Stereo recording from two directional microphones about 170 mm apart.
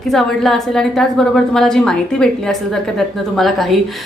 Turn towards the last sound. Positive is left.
turn(degrees=0)  # may be behind; listen again after turning